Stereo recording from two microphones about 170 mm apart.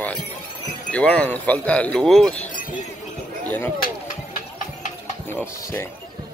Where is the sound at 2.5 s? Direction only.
50° left (ahead or behind).